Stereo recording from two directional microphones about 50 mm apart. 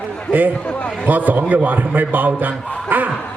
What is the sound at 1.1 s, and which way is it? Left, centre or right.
A man's voice, right.